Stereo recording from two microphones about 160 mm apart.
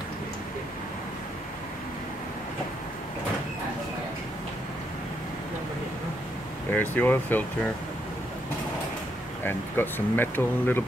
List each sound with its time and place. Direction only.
6.7 s speech: 10° left (ahead or behind)
9.4 s speech: 10° left (ahead or behind)